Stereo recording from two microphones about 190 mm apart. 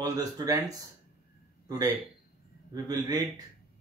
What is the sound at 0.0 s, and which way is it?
Speech, 20° right (ahead or behind).